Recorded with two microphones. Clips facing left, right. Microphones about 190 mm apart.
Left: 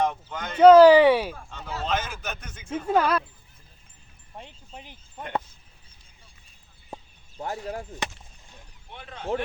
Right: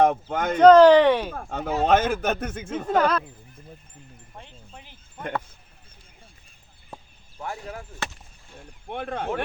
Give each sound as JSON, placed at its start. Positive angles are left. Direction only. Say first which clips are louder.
{"t": 0.0, "sound": "speech", "louder": "right 7 dB", "side_deg": -55}
{"t": 0.5, "sound": "speech", "louder": "even", "side_deg": 10}
{"t": 1.3, "sound": "a man's voice", "louder": "right 9 dB", "side_deg": -55}
{"t": 2.8, "sound": "speech", "louder": "right 1 dB", "side_deg": 10}
{"t": 4.4, "sound": "music", "louder": "left 3 dB", "side_deg": 15}
{"t": 6.9, "sound": "a sound", "louder": "left 2 dB", "side_deg": 20}
{"t": 7.4, "sound": "speech", "louder": "left 2 dB", "side_deg": 35}
{"t": 8.9, "sound": "speech", "louder": "right 7 dB", "side_deg": -55}